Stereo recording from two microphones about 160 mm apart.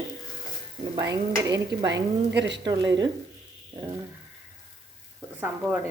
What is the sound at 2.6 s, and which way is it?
Speech, 25° right (ahead or behind).